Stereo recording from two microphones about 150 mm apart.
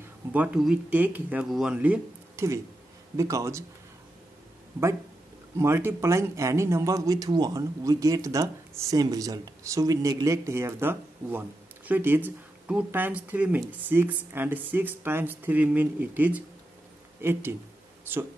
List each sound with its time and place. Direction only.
0.3 s speech: 10° right (ahead or behind)
5.6 s speech: 15° right (ahead or behind)